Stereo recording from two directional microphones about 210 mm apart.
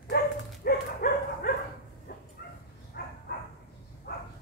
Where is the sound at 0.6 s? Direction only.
45° left (ahead or behind).